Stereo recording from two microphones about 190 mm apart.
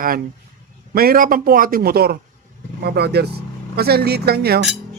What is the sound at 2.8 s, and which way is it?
Cutlery, 60° right (ahead or behind).